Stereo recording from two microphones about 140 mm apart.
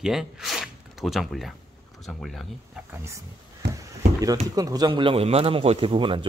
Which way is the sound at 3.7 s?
25° right (ahead or behind).